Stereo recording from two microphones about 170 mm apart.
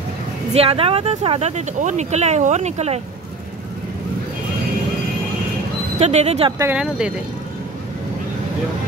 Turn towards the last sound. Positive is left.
turn(degrees=-5)  # may be behind; listen again after turning